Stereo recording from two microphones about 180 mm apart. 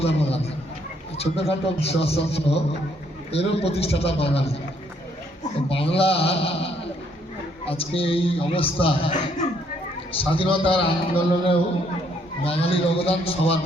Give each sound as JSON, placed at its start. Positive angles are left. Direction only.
{"t": 0.0, "sound": "a man's voice", "side_deg": 35}
{"t": 5.6, "sound": "a man's voice", "side_deg": 30}